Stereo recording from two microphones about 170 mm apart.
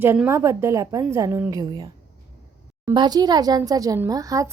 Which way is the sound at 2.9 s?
25° right (ahead or behind).